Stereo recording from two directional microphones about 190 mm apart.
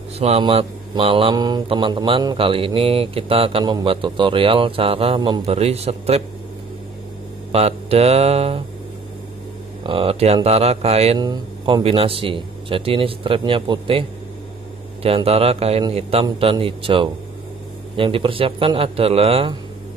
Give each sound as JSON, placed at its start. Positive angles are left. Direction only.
{"t": 0.2, "sound": "speech", "side_deg": -30}
{"t": 7.5, "sound": "speech", "side_deg": -35}
{"t": 9.8, "sound": "speech", "side_deg": -30}
{"t": 15.0, "sound": "speech", "side_deg": -30}